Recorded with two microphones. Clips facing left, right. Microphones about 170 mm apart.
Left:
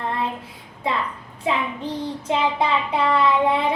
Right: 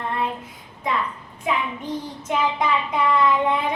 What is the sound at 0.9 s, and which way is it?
Child singing, 30° left (ahead or behind).